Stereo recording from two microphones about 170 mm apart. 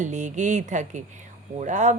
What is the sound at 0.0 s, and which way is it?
Speech, 45° right (ahead or behind).